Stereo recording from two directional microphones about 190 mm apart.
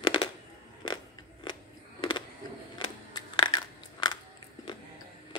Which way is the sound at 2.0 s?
25° left (ahead or behind).